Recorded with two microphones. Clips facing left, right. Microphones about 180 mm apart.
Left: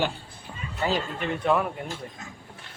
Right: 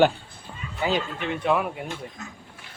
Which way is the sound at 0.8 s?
5° right (ahead or behind).